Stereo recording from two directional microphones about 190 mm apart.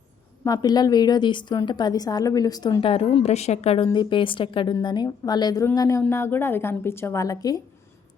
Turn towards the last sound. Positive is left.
turn(degrees=20)  # may be behind; listen again after turning